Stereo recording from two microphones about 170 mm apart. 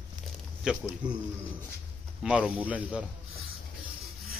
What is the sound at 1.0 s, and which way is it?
Speech, 25° right (ahead or behind).